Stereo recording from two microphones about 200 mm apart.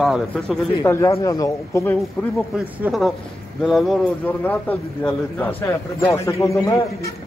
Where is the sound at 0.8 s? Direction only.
10° left (ahead or behind).